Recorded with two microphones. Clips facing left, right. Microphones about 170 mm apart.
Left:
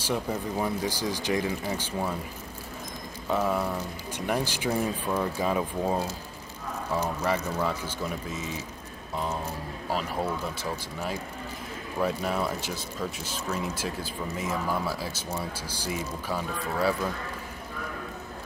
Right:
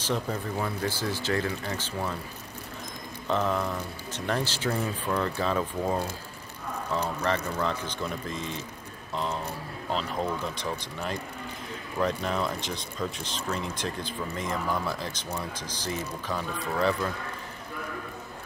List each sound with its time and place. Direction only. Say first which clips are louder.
0.0 s speech: left 1 dB; 10° left (ahead or behind)
3.3 s speech: left 1 dB; 10° left (ahead or behind)